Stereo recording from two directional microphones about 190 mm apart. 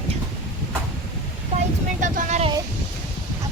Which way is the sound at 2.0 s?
35° right (ahead or behind).